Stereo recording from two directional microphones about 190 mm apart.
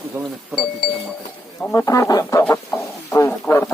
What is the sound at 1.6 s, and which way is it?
Speech, 15° left (ahead or behind).